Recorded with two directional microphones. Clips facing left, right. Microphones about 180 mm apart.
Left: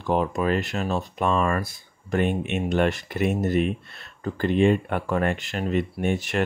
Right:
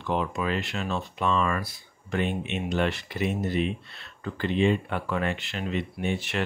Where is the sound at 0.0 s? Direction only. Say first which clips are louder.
Left 5 dB; 40° left (ahead or behind).